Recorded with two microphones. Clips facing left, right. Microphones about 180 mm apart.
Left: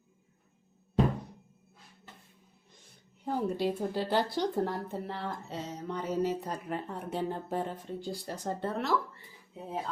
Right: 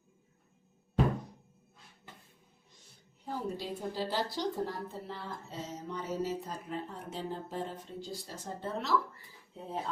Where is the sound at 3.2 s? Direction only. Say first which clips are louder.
Left 7 dB; 60° left (ahead or behind).